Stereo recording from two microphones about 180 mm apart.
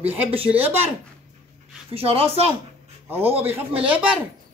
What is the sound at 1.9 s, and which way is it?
Speech, 30° right (ahead or behind).